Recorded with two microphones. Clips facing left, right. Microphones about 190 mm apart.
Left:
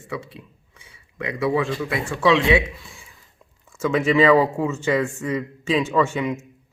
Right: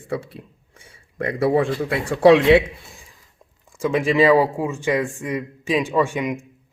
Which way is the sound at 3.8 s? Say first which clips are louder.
Even; 10° right (ahead or behind).